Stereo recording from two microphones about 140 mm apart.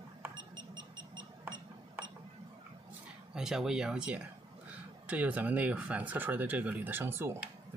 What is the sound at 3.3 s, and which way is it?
Speech, 5° right (ahead or behind).